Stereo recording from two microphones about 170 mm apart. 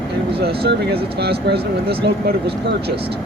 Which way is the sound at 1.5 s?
80° right.